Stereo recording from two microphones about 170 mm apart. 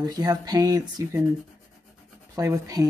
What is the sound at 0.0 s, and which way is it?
Speech, 20° right (ahead or behind).